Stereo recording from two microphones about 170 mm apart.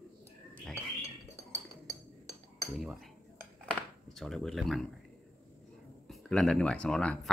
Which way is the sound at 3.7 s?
Centre (ahead or behind).